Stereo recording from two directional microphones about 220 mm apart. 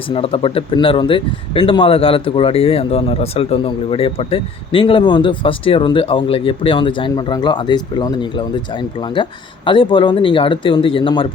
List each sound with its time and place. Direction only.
0.1 s speech: 25° left (ahead or behind)